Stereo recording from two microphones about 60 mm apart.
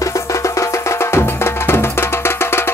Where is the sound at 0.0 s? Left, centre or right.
Left.